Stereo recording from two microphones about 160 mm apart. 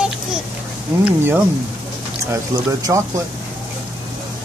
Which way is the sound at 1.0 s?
10° right (ahead or behind).